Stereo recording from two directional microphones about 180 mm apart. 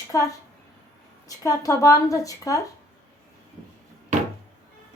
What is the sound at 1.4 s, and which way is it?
A woman's voice, 20° left (ahead or behind).